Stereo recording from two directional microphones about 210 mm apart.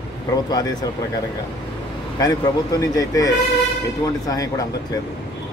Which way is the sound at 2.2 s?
15° left (ahead or behind).